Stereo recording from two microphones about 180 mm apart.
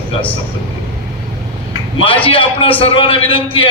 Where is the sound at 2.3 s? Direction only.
30° left (ahead or behind).